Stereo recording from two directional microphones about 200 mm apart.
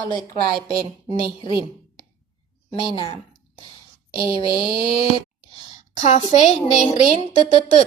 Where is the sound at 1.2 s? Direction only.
25° left (ahead or behind).